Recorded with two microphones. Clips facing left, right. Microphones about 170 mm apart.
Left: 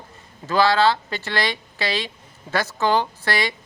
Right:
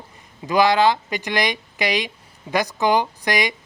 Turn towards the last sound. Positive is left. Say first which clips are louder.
# right 2 dB
turn(degrees=-15)  # may be behind; listen again after turning